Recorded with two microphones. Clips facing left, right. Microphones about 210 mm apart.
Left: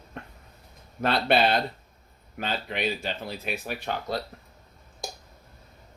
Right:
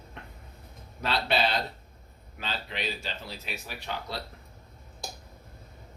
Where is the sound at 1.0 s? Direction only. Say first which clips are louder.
Left 5 dB; 50° left (ahead or behind).